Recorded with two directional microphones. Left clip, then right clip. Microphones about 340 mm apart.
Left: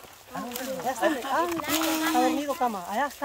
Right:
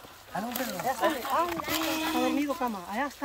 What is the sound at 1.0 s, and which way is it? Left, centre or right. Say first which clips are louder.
Speech: left 2 dB; left.